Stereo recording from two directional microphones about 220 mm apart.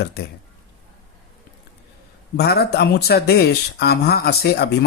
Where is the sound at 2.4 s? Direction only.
45° left (ahead or behind).